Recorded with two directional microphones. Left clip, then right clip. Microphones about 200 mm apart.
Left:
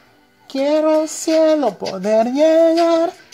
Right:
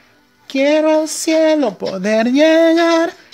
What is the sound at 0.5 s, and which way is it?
Speech, 25° right (ahead or behind).